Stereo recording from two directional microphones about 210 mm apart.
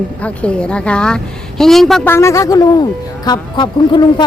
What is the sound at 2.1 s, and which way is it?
Speech, 15° left (ahead or behind).